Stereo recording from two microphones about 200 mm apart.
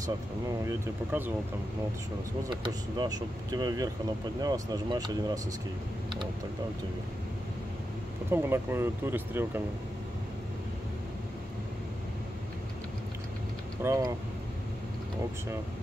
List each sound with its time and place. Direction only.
0.7 s speech: 10° right (ahead or behind)
2.5 s speech: 20° right (ahead or behind)
8.3 s speech: 10° right (ahead or behind)
13.8 s speech: 15° right (ahead or behind)